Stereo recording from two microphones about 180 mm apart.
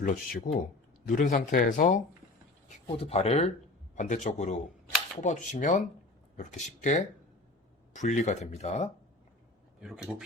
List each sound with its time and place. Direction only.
0.0 s speech: 45° left (ahead or behind)
2.6 s speech: 35° left (ahead or behind)
9.8 s speech: 5° right (ahead or behind)